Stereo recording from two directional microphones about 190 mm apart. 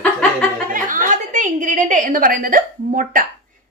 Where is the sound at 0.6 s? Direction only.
45° right (ahead or behind).